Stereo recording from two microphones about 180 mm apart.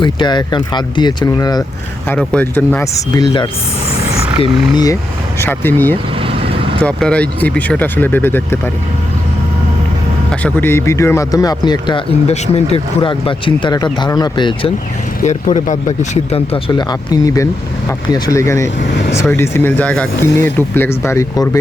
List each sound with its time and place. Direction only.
0.0 s speech: 25° left (ahead or behind)
2.0 s speech: 5° left (ahead or behind)
4.4 s speech: 25° left (ahead or behind)
5.4 s speech: 10° left (ahead or behind)
10.4 s speech: 10° left (ahead or behind)
12.3 s speech: 35° left (ahead or behind)
15.2 s speech: 40° left (ahead or behind); by 21.6 s 20° left (ahead or behind)